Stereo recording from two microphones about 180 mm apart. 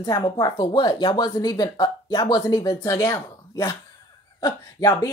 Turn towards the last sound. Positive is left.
turn(degrees=20)  # may be behind; listen again after turning